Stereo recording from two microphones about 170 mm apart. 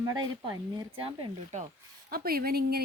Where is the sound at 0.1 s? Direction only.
25° right (ahead or behind).